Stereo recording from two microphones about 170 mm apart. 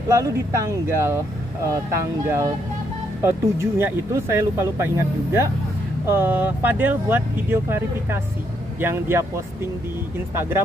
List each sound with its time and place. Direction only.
0.1 s speech: 15° right (ahead or behind)